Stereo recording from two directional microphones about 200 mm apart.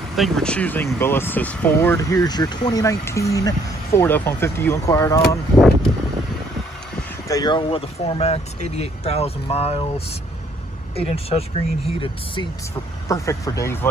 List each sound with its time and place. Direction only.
0.1 s speech: centre (ahead or behind)
7.2 s speech: 20° left (ahead or behind)
13.1 s speech: 15° left (ahead or behind)